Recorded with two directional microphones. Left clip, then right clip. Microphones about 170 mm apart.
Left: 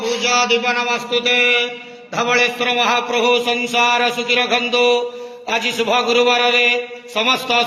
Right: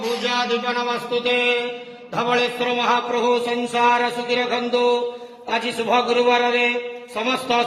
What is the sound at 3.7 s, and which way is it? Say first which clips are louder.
A man's voice: left 2 dB; 10° left (ahead or behind).